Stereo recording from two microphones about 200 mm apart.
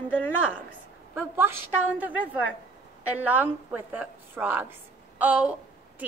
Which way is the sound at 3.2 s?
10° right (ahead or behind).